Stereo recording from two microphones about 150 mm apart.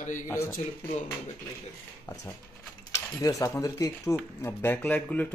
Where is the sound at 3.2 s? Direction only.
20° left (ahead or behind).